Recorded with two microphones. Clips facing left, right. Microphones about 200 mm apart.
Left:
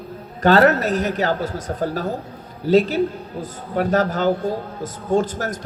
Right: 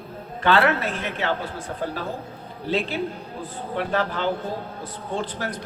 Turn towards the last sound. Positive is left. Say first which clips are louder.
# left 8 dB
turn(degrees=45)  # may be behind; listen again after turning